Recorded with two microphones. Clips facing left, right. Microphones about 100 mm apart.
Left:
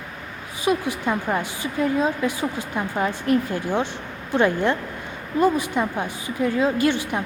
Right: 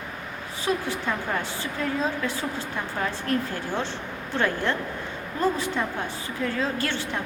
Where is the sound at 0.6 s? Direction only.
15° left (ahead or behind).